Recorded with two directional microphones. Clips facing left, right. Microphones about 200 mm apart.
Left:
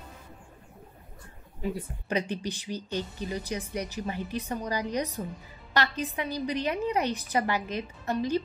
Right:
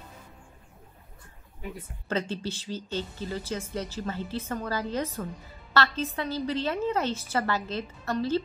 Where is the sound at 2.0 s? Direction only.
15° left (ahead or behind).